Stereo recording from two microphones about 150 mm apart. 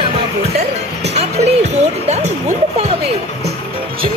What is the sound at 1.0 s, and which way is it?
Speech, 45° right (ahead or behind).